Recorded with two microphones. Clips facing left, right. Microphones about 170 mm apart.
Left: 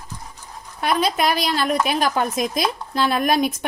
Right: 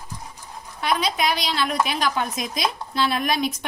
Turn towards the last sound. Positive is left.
turn(degrees=50)  # may be behind; listen again after turning